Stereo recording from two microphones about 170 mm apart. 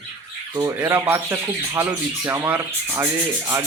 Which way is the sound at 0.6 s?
15° right (ahead or behind).